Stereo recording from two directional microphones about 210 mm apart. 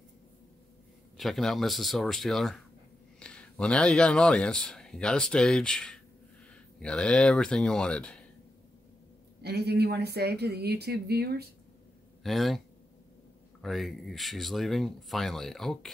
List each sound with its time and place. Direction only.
1.1 s speech: centre (ahead or behind)
9.4 s speech: 50° right (ahead or behind)
12.2 s speech: centre (ahead or behind)